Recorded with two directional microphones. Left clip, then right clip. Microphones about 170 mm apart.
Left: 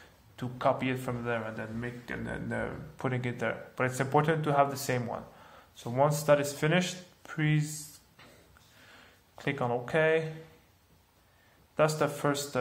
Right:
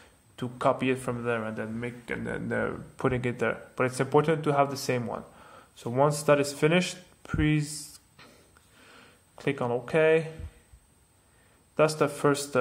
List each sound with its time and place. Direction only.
0.4 s a man's voice: 40° right (ahead or behind)
8.8 s a sound: 35° right (ahead or behind)
11.7 s a man's voice: 35° right (ahead or behind)